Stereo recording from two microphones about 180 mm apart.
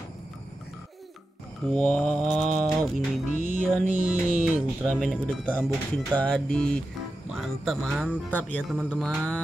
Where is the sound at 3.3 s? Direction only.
45° left (ahead or behind).